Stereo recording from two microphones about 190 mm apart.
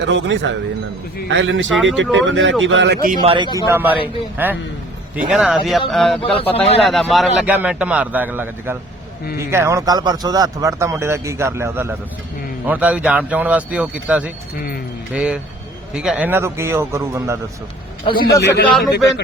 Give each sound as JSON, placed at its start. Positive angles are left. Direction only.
{"t": 0.0, "sound": "speech", "side_deg": -70}
{"t": 3.2, "sound": "a man's voice", "side_deg": -25}
{"t": 3.7, "sound": "speech", "side_deg": -10}
{"t": 6.3, "sound": "a man's voice", "side_deg": 30}
{"t": 6.8, "sound": "speech", "side_deg": 0}
{"t": 18.0, "sound": "a man's voice", "side_deg": 20}
{"t": 18.6, "sound": "speech", "side_deg": 0}